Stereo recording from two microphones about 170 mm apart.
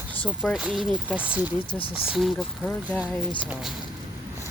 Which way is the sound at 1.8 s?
30° left (ahead or behind).